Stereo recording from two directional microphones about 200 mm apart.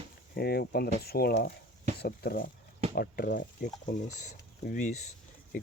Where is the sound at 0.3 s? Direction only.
50° left (ahead or behind).